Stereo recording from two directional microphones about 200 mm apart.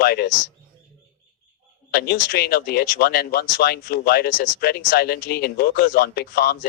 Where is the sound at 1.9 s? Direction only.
50° left (ahead or behind).